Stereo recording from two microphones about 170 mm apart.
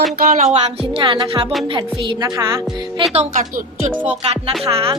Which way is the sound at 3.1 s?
40° right (ahead or behind).